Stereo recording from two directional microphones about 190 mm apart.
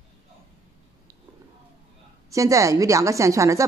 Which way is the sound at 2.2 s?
15° right (ahead or behind).